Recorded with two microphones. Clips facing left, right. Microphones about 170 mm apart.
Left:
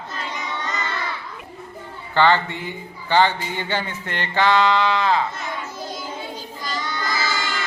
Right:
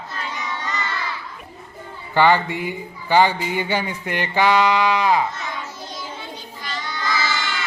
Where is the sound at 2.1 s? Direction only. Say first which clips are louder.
Right 1 dB; 15° right (ahead or behind).